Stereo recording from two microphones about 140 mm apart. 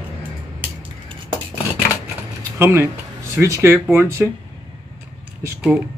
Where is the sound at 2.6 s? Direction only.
20° right (ahead or behind).